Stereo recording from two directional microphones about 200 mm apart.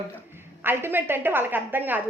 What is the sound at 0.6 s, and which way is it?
A woman's voice, 10° right (ahead or behind).